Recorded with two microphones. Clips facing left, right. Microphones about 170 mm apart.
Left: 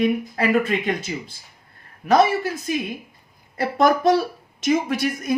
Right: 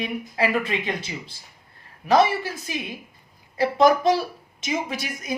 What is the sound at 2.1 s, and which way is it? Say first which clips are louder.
A woman's voice: left 2 dB; 50° left (ahead or behind).